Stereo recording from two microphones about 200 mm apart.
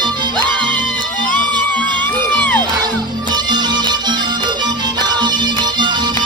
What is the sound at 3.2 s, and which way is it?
Music, 20° right (ahead or behind).